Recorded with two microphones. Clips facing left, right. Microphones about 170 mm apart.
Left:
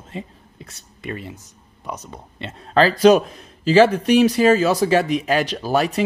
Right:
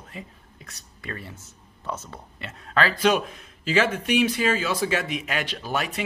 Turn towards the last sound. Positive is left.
turn(degrees=35)  # may be behind; listen again after turning